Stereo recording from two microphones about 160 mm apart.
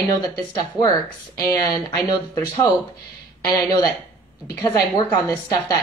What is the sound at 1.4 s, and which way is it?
Speech, 20° left (ahead or behind).